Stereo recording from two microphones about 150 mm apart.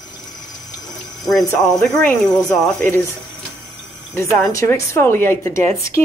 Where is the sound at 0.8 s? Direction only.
Centre (ahead or behind).